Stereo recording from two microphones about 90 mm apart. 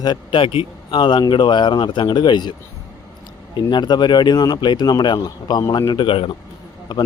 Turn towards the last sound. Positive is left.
turn(degrees=50)  # may be behind; listen again after turning